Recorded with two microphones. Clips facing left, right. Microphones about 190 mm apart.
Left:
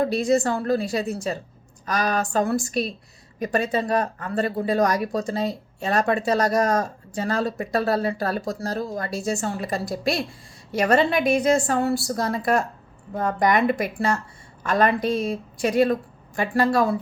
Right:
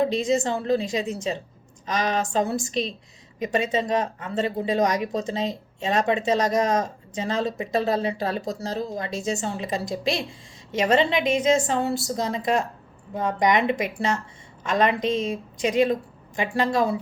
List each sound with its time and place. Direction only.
0.0 s speech: 20° right (ahead or behind)